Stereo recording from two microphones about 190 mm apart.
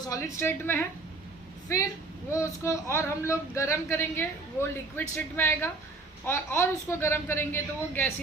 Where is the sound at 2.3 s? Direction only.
15° left (ahead or behind).